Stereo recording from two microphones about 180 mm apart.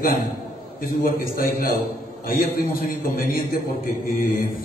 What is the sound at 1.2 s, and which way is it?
A man's voice, 55° left (ahead or behind).